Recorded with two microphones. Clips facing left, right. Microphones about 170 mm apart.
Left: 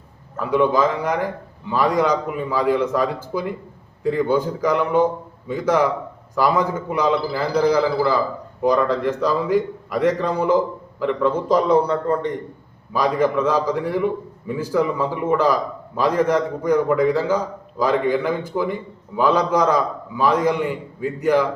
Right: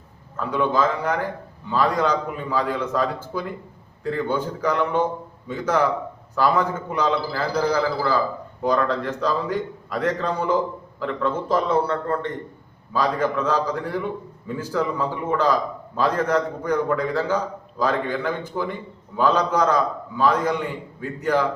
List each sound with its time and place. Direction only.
0.3 s a man's voice: 10° left (ahead or behind)